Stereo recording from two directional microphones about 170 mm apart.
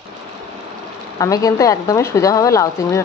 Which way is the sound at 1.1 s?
20° left (ahead or behind).